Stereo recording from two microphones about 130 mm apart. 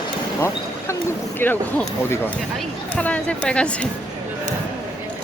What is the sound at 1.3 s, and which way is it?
Speech, 15° left (ahead or behind).